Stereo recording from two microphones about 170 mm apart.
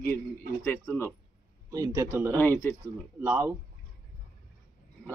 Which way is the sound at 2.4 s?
10° left (ahead or behind).